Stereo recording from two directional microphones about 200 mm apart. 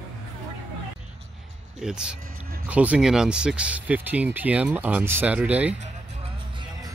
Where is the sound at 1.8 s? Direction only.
5° right (ahead or behind).